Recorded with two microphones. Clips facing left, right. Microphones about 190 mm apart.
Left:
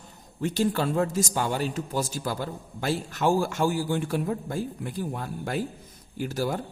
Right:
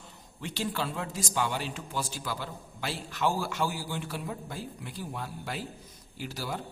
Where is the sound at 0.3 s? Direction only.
45° left (ahead or behind).